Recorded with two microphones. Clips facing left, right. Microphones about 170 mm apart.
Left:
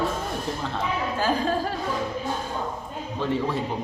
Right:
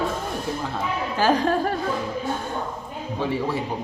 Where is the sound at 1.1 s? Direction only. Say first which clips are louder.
Right 6 dB; 80° right.